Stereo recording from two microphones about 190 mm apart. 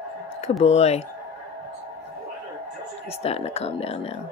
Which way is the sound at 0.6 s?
35° left (ahead or behind).